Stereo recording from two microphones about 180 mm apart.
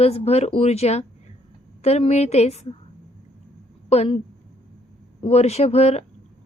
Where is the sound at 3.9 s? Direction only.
35° left (ahead or behind).